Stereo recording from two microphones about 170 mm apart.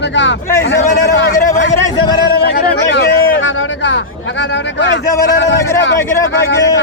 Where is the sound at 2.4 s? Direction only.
70° left (ahead or behind).